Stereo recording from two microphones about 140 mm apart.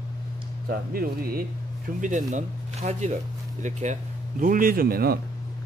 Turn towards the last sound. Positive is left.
turn(degrees=-90)